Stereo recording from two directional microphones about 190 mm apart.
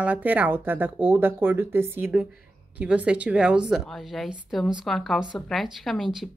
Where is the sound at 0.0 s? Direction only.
10° right (ahead or behind).